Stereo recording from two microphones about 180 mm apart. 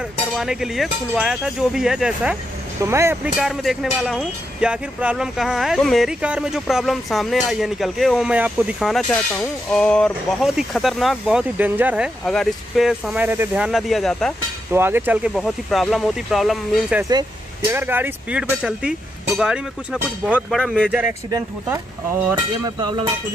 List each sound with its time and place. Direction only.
0.4 s speech: 5° right (ahead or behind)
2.8 s speech: 15° right (ahead or behind)
3.3 s speech: centre (ahead or behind)
14.7 s speech: 10° right (ahead or behind)
15.3 s speech: centre (ahead or behind)
17.1 s speech: 20° right (ahead or behind)